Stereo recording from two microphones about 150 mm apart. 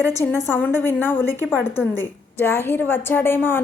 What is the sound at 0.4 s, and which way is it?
A woman's voice, 15° left (ahead or behind).